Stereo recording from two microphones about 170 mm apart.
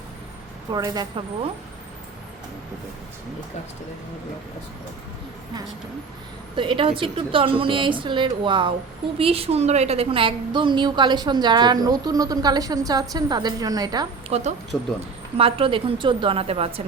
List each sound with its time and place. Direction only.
0.7 s a woman's voice: 25° right (ahead or behind)
6.6 s a woman's voice: 30° right (ahead or behind)
14.3 s speech: 40° right (ahead or behind)
14.7 s speech: centre (ahead or behind)
15.4 s a woman's voice: 35° right (ahead or behind)